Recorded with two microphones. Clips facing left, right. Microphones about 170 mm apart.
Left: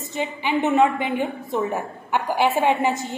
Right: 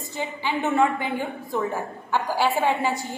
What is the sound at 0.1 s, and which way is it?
A woman's voice, 20° left (ahead or behind).